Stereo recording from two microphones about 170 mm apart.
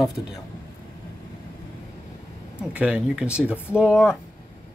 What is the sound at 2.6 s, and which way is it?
Speech, 5° right (ahead or behind).